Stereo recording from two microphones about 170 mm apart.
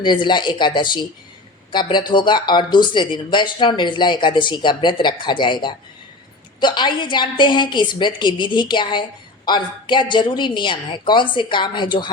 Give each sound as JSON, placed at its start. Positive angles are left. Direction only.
{"t": 0.0, "sound": "speech", "side_deg": 25}